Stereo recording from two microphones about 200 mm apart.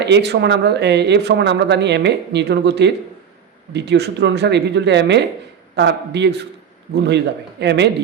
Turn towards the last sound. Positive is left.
turn(degrees=-60)  # may be behind; listen again after turning